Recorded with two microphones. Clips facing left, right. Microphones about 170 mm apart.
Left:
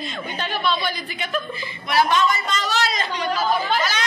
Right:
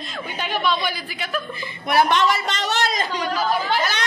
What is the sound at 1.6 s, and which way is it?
A woman's voice, 55° right (ahead or behind).